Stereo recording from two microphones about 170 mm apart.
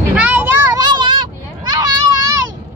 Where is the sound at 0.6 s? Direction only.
20° right (ahead or behind).